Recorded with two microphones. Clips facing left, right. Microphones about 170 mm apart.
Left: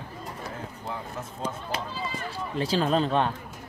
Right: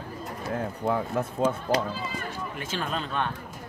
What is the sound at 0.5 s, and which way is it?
Speech, 55° right (ahead or behind).